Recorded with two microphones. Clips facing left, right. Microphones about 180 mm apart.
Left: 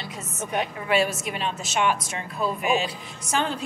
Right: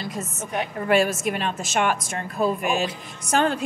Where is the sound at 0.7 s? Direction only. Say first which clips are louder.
Right 5 dB; 45° right (ahead or behind).